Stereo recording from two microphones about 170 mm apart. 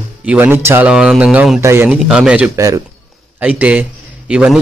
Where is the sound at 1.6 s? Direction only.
15° right (ahead or behind).